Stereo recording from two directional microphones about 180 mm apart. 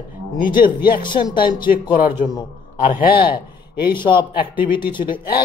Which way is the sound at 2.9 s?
50° left (ahead or behind).